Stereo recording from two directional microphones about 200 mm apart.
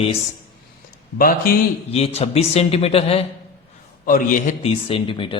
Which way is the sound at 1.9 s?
30° left (ahead or behind).